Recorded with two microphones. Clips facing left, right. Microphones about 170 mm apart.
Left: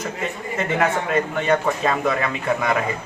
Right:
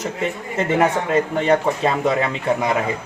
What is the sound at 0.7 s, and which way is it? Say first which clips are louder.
Speech: right 3 dB; 30° right (ahead or behind).